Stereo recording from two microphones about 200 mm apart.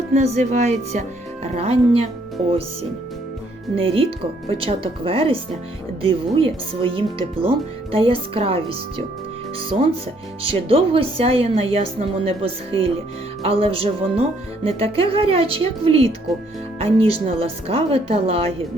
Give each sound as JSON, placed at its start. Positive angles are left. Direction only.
{"t": 0.1, "sound": "speech", "side_deg": -35}
{"t": 3.8, "sound": "speech", "side_deg": -30}
{"t": 10.4, "sound": "speech", "side_deg": -30}